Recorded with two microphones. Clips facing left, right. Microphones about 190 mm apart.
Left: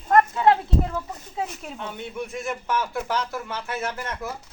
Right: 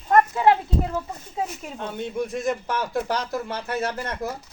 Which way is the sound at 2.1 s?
35° right (ahead or behind).